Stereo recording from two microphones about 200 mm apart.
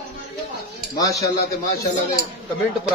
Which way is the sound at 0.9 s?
15° left (ahead or behind).